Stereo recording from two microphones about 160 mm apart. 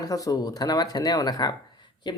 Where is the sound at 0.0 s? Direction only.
20° left (ahead or behind).